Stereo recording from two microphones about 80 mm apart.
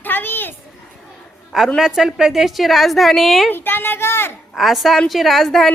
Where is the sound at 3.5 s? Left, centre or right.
Left.